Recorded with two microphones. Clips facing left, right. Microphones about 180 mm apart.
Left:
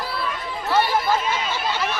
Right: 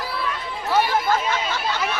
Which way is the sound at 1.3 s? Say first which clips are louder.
Even; 15° left (ahead or behind).